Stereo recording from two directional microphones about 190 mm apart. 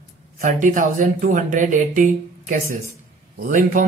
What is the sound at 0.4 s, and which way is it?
Speech, 45° right (ahead or behind).